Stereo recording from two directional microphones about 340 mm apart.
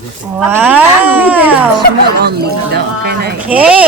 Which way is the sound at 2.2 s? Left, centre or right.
Right.